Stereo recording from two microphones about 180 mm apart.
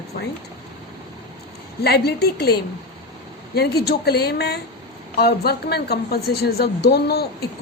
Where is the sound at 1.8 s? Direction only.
65° left (ahead or behind).